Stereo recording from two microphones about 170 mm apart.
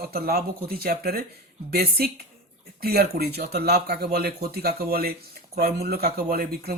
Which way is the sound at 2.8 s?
65° right (ahead or behind).